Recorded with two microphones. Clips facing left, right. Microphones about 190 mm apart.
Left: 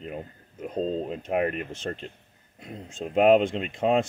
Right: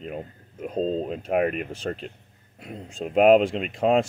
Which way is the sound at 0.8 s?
30° right (ahead or behind).